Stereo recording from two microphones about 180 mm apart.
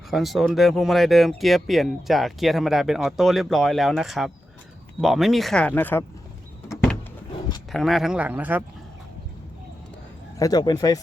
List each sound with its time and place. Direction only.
0.1 s speech: centre (ahead or behind)
7.7 s speech: centre (ahead or behind)
10.3 s speech: 20° left (ahead or behind)